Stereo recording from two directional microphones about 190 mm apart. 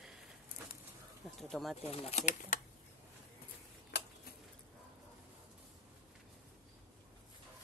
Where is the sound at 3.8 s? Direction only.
60° left (ahead or behind).